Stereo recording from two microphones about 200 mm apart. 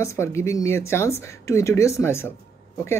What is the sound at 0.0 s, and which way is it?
Speech, 15° left (ahead or behind).